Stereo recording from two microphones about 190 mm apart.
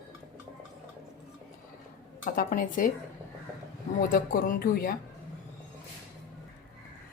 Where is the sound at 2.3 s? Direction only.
45° left (ahead or behind).